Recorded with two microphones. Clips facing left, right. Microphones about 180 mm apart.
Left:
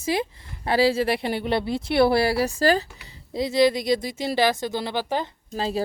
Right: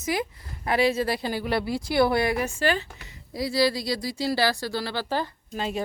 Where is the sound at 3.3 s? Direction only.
20° left (ahead or behind).